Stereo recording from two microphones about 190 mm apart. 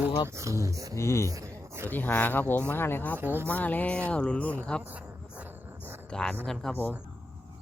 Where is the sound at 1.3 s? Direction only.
15° right (ahead or behind).